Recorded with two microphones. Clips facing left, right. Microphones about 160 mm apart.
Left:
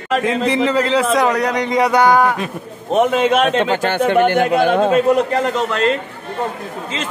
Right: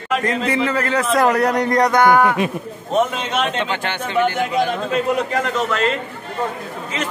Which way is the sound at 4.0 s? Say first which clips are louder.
Left 5 dB; 55° left (ahead or behind).